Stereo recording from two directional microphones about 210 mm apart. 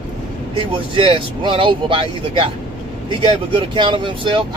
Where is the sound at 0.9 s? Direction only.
25° right (ahead or behind).